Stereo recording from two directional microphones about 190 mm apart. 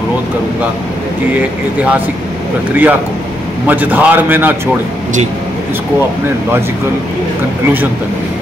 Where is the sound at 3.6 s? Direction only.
10° right (ahead or behind).